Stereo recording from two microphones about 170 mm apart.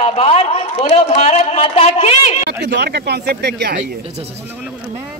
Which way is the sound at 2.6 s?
85° right.